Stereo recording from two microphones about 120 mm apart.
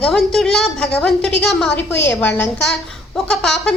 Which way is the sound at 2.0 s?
15° left (ahead or behind).